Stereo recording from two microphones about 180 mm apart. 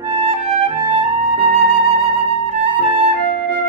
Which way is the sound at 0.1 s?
25° right (ahead or behind).